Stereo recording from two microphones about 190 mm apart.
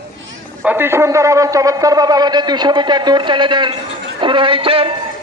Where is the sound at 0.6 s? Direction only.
10° right (ahead or behind).